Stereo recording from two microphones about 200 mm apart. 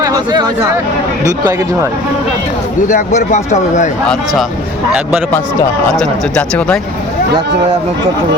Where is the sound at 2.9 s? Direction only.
35° left (ahead or behind).